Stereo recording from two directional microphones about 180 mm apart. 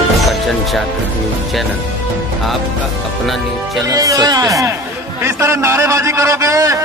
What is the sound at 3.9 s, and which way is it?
A man's voice, 20° right (ahead or behind).